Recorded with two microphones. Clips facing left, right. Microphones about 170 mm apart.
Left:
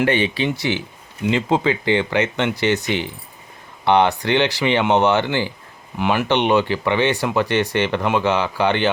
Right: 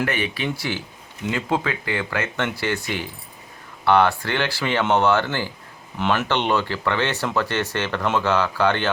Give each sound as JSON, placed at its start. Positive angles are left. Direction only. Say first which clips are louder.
{"t": 0.0, "sound": "speech", "louder": "left 6 dB", "side_deg": 25}